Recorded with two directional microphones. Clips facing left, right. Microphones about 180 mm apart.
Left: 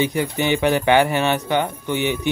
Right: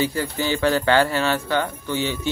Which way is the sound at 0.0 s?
20° left (ahead or behind).